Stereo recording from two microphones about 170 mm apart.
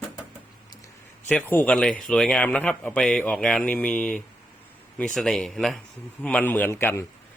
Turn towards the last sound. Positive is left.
turn(degrees=15)  # may be behind; listen again after turning